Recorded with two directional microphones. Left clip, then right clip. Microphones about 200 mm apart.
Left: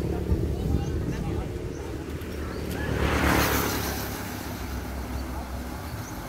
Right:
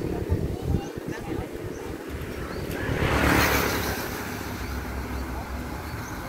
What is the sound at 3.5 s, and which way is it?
Vehicle, 60° left (ahead or behind).